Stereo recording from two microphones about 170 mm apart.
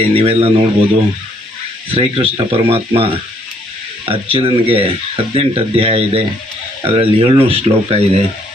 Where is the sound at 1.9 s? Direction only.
35° right (ahead or behind).